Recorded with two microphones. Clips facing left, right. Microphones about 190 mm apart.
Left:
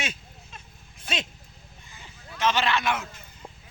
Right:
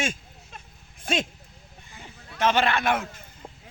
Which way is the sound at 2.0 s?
55° right (ahead or behind).